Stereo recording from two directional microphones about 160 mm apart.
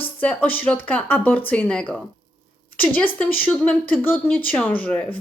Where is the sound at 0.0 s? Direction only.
10° left (ahead or behind).